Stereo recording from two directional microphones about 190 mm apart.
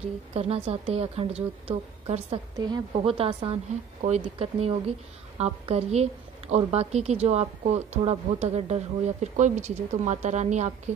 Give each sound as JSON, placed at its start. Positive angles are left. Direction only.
{"t": 0.3, "sound": "a woman's voice", "side_deg": -30}